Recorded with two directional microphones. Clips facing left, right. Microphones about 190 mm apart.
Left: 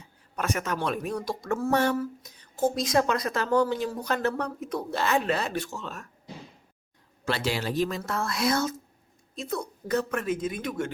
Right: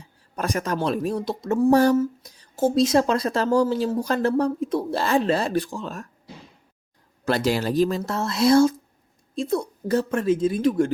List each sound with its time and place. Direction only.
0.3 s speech: 35° right (ahead or behind); by 1.7 s 20° right (ahead or behind)
1.7 s speech: 35° right (ahead or behind)
7.3 s speech: 40° right (ahead or behind)